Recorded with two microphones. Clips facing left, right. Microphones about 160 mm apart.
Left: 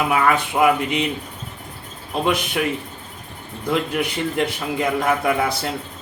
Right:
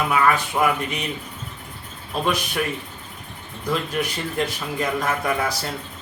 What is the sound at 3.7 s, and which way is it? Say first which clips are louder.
A man's voice: left 3 dB; 20° left (ahead or behind).